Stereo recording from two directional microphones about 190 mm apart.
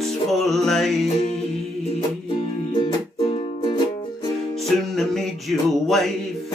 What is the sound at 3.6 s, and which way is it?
Music, 25° left (ahead or behind).